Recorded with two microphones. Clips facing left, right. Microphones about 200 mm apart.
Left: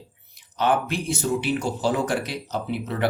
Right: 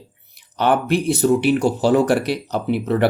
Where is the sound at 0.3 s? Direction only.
65° right (ahead or behind).